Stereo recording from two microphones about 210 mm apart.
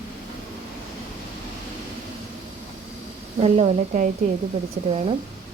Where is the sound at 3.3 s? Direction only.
30° right (ahead or behind).